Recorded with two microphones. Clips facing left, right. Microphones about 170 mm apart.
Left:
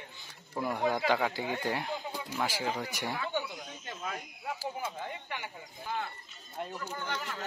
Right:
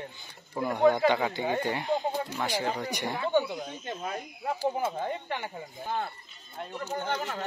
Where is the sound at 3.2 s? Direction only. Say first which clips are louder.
Right 9 dB; 55° right (ahead or behind).